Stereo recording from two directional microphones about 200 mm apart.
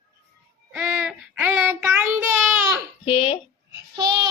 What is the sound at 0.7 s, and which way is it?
Child singing, 5° right (ahead or behind).